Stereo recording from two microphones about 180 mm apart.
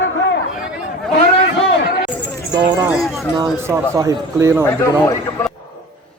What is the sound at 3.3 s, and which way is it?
Speech, 20° right (ahead or behind).